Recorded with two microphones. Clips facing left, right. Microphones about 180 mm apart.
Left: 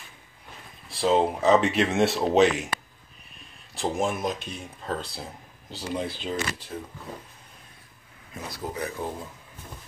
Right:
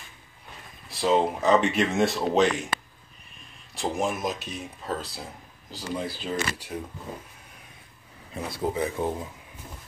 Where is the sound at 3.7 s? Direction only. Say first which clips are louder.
Left 1 dB; centre (ahead or behind).